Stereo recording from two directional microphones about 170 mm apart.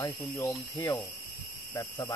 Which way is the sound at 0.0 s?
15° left (ahead or behind).